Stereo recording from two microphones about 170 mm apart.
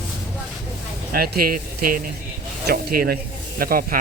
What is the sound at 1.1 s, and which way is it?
Speech, 60° right (ahead or behind).